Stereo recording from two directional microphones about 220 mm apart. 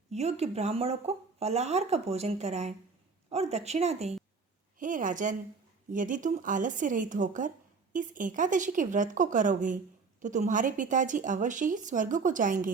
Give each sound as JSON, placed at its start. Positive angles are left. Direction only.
{"t": 0.1, "sound": "speech", "side_deg": -30}